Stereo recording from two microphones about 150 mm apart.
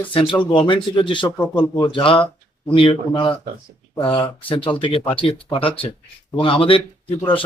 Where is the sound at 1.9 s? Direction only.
35° left (ahead or behind).